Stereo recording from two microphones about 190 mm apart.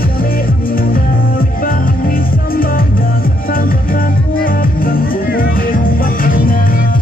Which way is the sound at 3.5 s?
50° left (ahead or behind).